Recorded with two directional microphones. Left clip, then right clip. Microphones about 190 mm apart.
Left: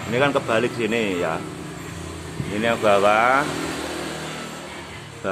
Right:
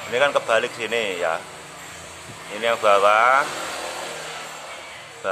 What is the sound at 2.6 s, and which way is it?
Mantra, 10° right (ahead or behind).